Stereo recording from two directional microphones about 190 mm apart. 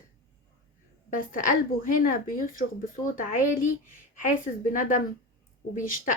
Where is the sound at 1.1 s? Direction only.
45° left (ahead or behind).